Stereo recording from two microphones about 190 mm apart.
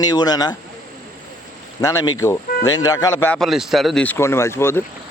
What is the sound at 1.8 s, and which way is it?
A man's voice, 20° left (ahead or behind).